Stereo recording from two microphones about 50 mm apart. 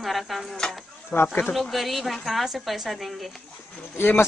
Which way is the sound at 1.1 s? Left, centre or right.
Left.